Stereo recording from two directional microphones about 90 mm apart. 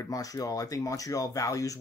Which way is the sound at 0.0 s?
40° left (ahead or behind).